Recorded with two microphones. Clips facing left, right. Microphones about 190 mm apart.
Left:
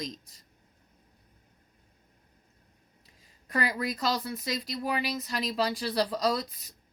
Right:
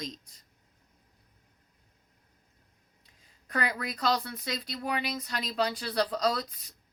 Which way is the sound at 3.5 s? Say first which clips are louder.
Left 2 dB; 5° left (ahead or behind).